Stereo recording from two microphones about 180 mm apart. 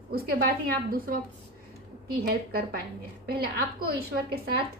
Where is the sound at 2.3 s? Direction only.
55° right (ahead or behind).